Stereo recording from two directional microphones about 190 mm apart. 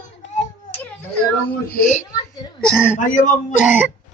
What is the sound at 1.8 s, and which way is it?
Speech, 40° left (ahead or behind).